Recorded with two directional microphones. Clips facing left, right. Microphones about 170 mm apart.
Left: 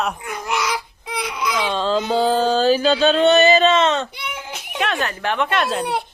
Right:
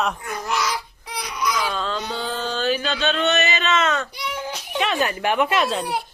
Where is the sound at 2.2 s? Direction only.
35° left (ahead or behind).